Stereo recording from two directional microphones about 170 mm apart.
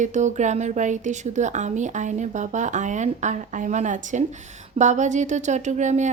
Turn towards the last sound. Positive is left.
turn(degrees=-45)  # may be behind; listen again after turning